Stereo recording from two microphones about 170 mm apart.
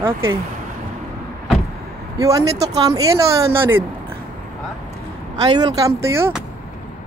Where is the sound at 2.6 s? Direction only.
20° right (ahead or behind).